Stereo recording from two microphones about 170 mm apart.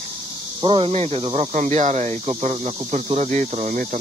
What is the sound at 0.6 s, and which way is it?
Speech, 30° right (ahead or behind).